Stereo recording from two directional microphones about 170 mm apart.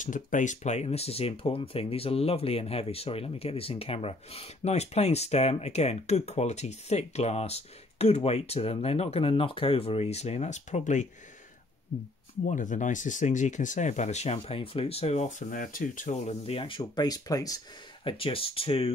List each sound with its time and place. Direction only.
0.0 s speech: 50° left (ahead or behind)
12.4 s speech: 50° left (ahead or behind); by 17.6 s 20° left (ahead or behind)
18.0 s speech: 30° left (ahead or behind)